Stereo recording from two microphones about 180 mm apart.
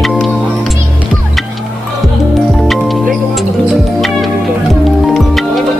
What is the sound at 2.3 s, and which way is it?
Music, centre (ahead or behind).